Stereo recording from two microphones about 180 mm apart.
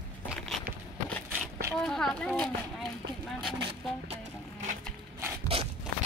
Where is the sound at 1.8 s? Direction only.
5° left (ahead or behind).